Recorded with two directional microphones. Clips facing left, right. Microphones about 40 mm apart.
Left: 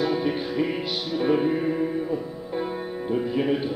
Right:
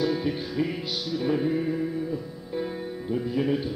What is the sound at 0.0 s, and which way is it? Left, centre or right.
Music, left.